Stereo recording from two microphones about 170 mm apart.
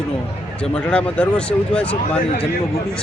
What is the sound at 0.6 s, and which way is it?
Speech, 5° left (ahead or behind).